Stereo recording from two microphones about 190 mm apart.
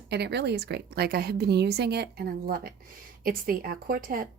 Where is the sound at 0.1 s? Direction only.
60° right (ahead or behind).